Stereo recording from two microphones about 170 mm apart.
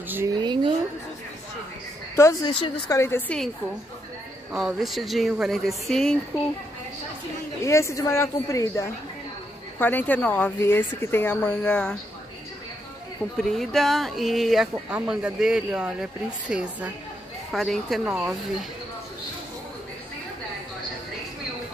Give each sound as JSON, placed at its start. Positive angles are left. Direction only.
{"t": 0.4, "sound": "a sound", "side_deg": -25}
{"t": 2.1, "sound": "a woman's voice", "side_deg": 20}
{"t": 4.5, "sound": "speech", "side_deg": -5}
{"t": 7.6, "sound": "a woman's voice", "side_deg": 15}
{"t": 13.4, "sound": "a woman's voice", "side_deg": 0}